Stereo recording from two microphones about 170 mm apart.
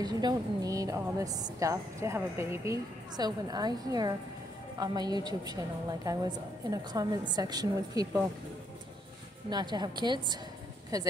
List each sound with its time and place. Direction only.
0.0 s a woman's voice: 25° right (ahead or behind)
9.5 s a woman's voice: 25° right (ahead or behind)